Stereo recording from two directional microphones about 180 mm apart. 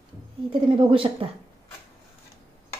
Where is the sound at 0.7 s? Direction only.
30° right (ahead or behind).